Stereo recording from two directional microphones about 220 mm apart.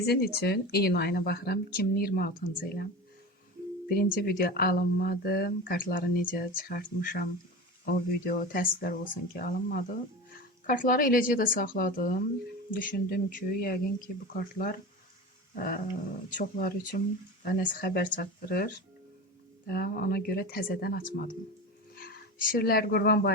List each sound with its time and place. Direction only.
0.0 s speech: 45° left (ahead or behind)
3.8 s speech: 45° left (ahead or behind)